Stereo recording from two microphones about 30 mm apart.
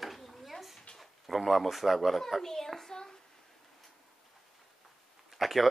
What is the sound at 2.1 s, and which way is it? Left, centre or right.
A child's voice, centre.